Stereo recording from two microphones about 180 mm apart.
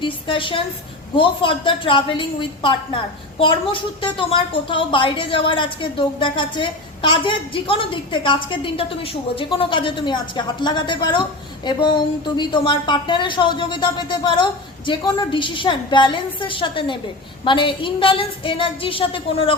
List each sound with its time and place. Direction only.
0.0 s a woman's voice: 30° left (ahead or behind)